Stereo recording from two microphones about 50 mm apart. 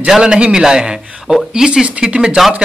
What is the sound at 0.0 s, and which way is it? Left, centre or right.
A man's voice, centre.